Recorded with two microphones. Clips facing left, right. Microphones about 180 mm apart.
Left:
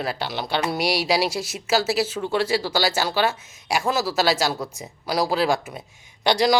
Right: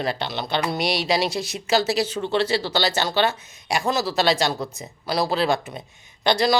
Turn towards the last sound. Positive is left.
turn(degrees=15)  # may be behind; listen again after turning